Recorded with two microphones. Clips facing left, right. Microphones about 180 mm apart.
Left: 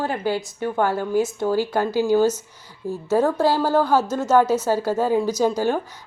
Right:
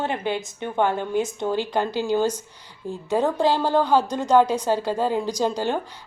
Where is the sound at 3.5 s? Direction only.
5° left (ahead or behind).